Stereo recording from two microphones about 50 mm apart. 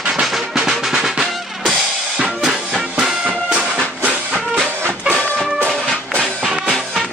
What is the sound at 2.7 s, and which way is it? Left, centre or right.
Music, centre.